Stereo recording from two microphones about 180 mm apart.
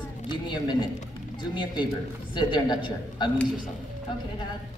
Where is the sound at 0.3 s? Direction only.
25° left (ahead or behind).